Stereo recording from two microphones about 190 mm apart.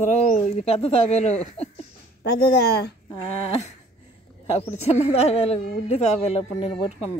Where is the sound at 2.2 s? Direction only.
60° left (ahead or behind).